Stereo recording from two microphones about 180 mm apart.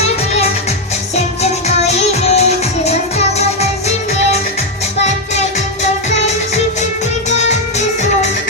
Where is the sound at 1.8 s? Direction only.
35° left (ahead or behind).